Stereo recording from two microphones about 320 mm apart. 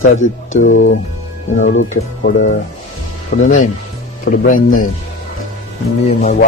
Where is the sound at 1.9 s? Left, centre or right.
Left.